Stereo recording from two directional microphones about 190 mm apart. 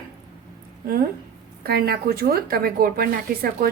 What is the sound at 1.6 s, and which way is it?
A woman's voice, 55° right (ahead or behind).